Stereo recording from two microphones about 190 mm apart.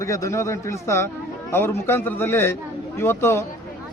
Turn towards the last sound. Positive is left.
turn(degrees=10)  # may be behind; listen again after turning